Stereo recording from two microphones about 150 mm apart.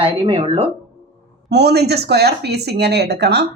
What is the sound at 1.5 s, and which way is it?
Speech, 90° right.